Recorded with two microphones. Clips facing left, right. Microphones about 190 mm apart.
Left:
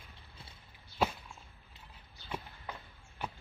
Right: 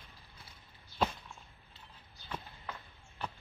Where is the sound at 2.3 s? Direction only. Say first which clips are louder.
Left 1 dB; 10° left (ahead or behind).